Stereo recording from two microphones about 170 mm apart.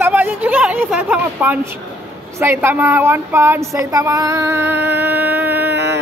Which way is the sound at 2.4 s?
15° right (ahead or behind).